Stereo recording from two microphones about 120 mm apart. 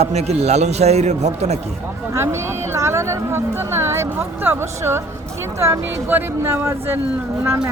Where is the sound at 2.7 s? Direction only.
25° right (ahead or behind).